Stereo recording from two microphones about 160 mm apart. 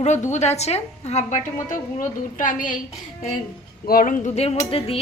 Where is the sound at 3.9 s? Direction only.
60° left (ahead or behind); by 5.0 s 40° left (ahead or behind).